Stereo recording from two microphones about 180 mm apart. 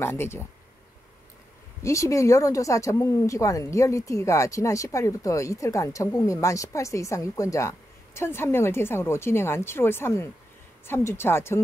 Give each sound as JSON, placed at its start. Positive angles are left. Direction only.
{"t": 0.0, "sound": "speech", "side_deg": 15}
{"t": 1.8, "sound": "speech", "side_deg": 15}